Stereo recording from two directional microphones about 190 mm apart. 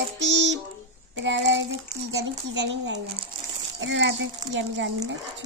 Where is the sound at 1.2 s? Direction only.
70° right (ahead or behind).